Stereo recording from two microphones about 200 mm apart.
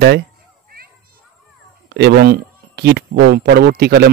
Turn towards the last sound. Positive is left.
turn(degrees=-50)  # may be behind; listen again after turning